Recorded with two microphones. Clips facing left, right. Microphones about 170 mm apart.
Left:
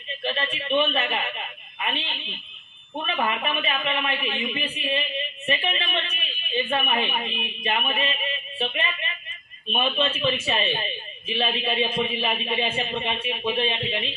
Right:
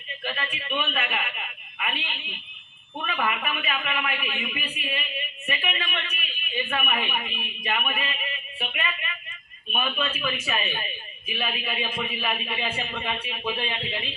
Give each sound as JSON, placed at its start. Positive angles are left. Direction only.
{"t": 0.3, "sound": "a woman's voice", "side_deg": 25}